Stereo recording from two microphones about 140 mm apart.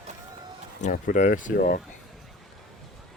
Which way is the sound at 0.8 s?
70° left (ahead or behind).